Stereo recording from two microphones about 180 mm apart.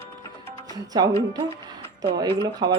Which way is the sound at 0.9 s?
20° right (ahead or behind).